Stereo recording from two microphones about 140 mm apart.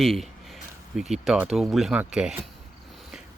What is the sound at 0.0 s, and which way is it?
Speech, centre (ahead or behind).